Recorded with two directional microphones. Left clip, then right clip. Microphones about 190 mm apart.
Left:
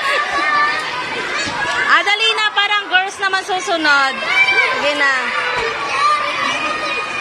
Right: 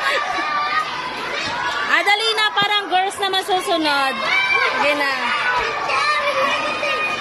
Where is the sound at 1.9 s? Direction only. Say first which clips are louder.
Left 3 dB; 25° right (ahead or behind).